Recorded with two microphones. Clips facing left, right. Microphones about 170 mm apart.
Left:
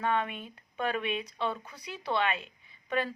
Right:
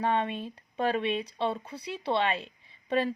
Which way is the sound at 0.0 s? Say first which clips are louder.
Right 2 dB; 30° right (ahead or behind).